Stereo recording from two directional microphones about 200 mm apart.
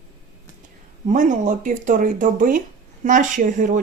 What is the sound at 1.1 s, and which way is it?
Speech, 40° right (ahead or behind).